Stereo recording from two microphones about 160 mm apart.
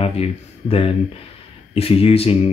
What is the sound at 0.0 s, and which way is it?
Speech, 40° left (ahead or behind).